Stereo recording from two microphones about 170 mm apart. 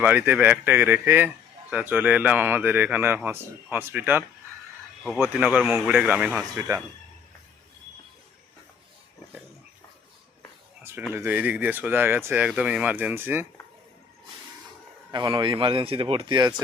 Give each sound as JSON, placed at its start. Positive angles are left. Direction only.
{"t": 0.0, "sound": "speech", "side_deg": -10}
{"t": 5.2, "sound": "speech", "side_deg": -5}
{"t": 11.1, "sound": "speech", "side_deg": -10}
{"t": 15.1, "sound": "speech", "side_deg": -30}